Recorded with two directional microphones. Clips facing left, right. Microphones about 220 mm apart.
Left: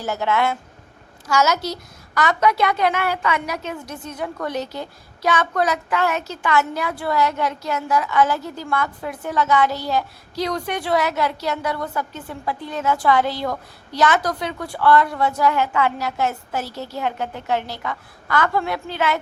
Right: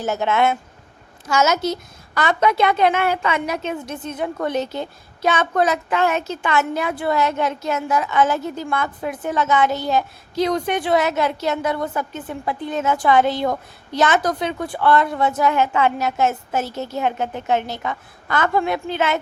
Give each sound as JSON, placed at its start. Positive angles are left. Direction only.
{"t": 0.0, "sound": "a woman's voice", "side_deg": -25}